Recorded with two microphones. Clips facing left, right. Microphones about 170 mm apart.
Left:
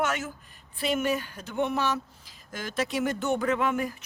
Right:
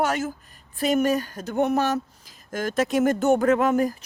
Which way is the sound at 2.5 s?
50° right (ahead or behind).